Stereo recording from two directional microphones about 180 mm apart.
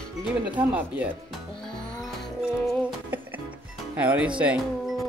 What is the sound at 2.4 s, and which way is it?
Music, 5° right (ahead or behind).